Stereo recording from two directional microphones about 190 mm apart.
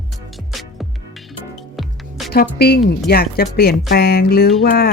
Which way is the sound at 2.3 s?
55° left (ahead or behind).